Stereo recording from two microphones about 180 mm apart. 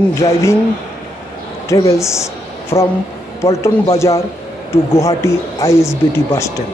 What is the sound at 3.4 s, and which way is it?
Speech, 15° left (ahead or behind).